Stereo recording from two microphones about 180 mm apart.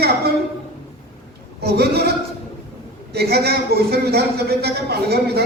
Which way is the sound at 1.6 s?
60° right (ahead or behind).